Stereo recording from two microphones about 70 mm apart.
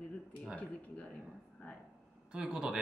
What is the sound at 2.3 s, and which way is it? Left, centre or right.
Speech, centre.